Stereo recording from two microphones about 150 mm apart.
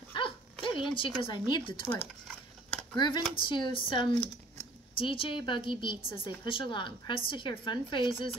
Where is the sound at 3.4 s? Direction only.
35° left (ahead or behind).